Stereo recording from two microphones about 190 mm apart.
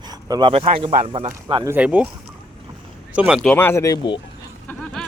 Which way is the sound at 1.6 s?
10° right (ahead or behind).